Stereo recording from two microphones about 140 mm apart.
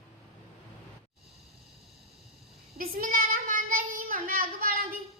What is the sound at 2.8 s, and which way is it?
Child singing, 85° right.